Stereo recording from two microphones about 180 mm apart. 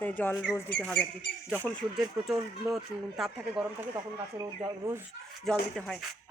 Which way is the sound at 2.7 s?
Centre (ahead or behind).